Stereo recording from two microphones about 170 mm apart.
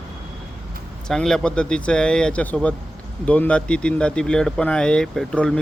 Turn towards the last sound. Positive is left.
turn(degrees=5)  # may be behind; listen again after turning